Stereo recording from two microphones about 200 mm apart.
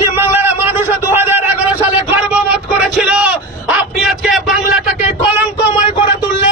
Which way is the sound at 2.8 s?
5° right (ahead or behind).